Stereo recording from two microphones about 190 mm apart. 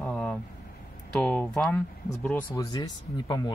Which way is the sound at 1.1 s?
10° left (ahead or behind).